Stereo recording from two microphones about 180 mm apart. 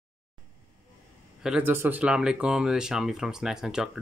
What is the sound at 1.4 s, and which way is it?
Speech, 10° right (ahead or behind).